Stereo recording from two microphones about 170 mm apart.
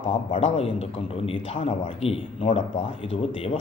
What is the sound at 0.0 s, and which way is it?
A man's voice, 30° left (ahead or behind).